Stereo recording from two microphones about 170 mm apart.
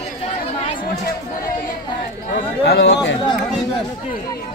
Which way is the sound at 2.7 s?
90° left.